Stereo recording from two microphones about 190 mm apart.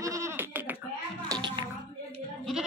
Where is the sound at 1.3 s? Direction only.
25° right (ahead or behind).